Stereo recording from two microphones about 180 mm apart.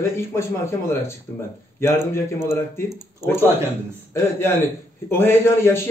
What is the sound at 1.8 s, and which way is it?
Speech, 15° left (ahead or behind).